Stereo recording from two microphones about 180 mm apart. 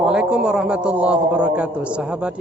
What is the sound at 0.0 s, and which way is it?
A man's voice, 5° right (ahead or behind).